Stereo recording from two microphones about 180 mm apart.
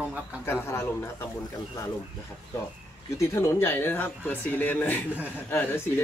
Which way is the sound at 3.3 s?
10° left (ahead or behind).